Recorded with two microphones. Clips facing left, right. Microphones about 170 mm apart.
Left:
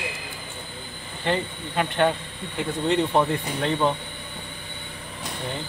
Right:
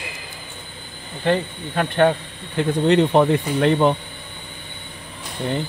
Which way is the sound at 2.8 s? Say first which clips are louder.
Right 6 dB; 75° right (ahead or behind).